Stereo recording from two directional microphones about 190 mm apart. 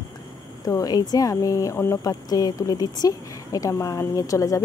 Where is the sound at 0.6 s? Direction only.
20° left (ahead or behind).